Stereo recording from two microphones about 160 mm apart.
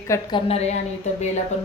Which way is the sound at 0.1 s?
30° left (ahead or behind).